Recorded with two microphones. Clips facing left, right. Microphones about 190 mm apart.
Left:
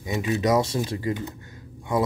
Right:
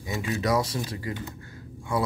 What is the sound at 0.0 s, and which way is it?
Speech, 20° left (ahead or behind).